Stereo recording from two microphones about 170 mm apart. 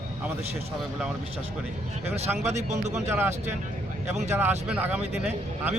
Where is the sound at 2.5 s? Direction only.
45° right (ahead or behind).